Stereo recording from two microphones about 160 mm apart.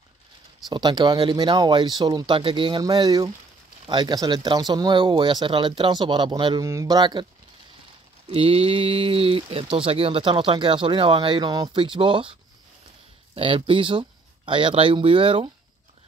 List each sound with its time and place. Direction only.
0.7 s speech: 25° right (ahead or behind)
8.3 s speech: 35° right (ahead or behind)